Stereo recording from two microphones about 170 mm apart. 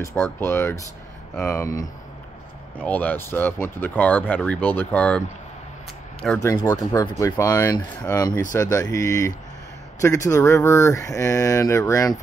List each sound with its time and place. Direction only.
0.0 s speech: 15° left (ahead or behind)
6.4 s speech: 20° left (ahead or behind)